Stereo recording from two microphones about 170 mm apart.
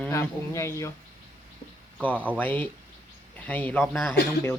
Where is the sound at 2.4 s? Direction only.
10° left (ahead or behind).